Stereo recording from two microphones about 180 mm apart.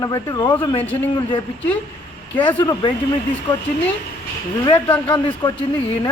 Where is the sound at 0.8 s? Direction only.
10° left (ahead or behind).